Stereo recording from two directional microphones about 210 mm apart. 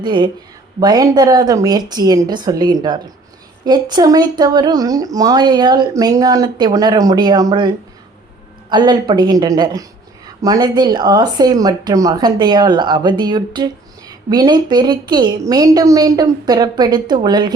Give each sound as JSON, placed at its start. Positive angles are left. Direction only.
{"t": 0.0, "sound": "speech", "side_deg": -20}
{"t": 8.7, "sound": "speech", "side_deg": -20}